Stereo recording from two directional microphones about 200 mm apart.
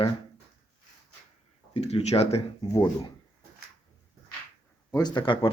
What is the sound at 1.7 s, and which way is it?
Speech, 35° left (ahead or behind).